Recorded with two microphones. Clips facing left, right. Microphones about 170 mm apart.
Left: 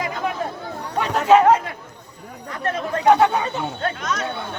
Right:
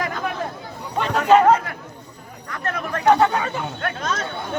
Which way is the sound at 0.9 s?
5° left (ahead or behind).